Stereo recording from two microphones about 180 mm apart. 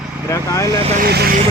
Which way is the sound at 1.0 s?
60° right (ahead or behind).